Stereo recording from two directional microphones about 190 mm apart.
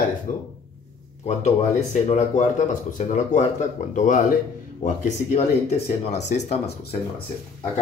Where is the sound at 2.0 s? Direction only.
35° left (ahead or behind).